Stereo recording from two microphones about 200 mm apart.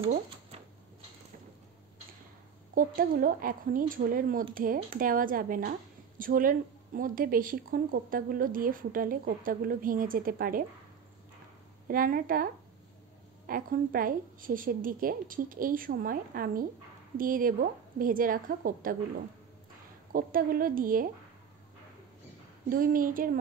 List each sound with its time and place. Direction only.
2.7 s speech: 45° right (ahead or behind)
11.9 s speech: 45° right (ahead or behind)
13.5 s speech: 45° right (ahead or behind)
20.1 s speech: 45° right (ahead or behind)
22.7 s speech: 45° right (ahead or behind)